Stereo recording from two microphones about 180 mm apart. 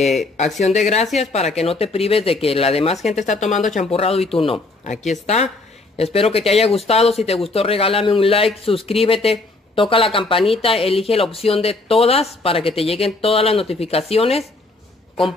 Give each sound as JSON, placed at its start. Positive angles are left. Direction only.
{"t": 0.6, "sound": "speech", "side_deg": 40}